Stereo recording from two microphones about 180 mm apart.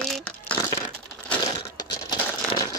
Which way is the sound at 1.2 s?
20° left (ahead or behind).